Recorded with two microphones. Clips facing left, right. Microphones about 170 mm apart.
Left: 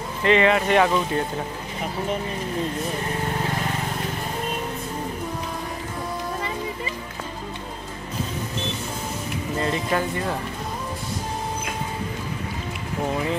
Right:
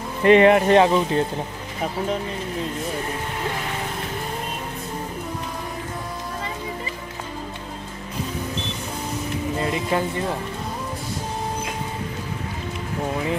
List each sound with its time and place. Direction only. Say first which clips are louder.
0.2 s speech: right 5 dB; 50° right (ahead or behind)
0.7 s speech: right 3 dB; 25° right (ahead or behind)
9.7 s speech: even; 20° right (ahead or behind)